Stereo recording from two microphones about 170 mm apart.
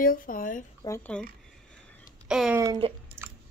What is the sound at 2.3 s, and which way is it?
Speech, 5° right (ahead or behind).